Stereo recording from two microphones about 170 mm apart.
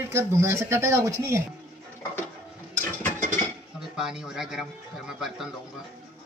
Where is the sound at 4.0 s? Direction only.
5° right (ahead or behind).